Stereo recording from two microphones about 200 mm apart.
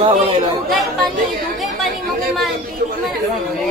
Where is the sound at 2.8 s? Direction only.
50° right (ahead or behind).